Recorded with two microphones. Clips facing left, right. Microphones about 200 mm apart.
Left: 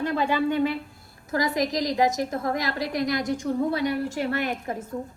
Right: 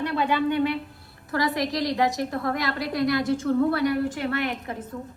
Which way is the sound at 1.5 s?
20° left (ahead or behind).